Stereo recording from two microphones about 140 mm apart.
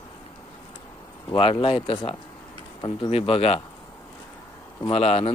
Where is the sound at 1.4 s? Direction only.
40° left (ahead or behind).